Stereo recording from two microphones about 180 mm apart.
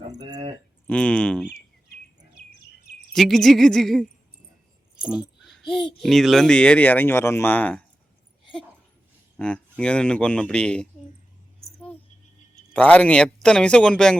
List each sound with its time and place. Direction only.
0.2 s speech: 20° right (ahead or behind)
0.9 s speech: 5° left (ahead or behind)
2.4 s chirp: 65° left (ahead or behind)
3.1 s a child's voice: centre (ahead or behind)
5.0 s a child's voice: 5° right (ahead or behind)
9.4 s a child's voice: 5° left (ahead or behind)
12.7 s a child's voice: 5° left (ahead or behind)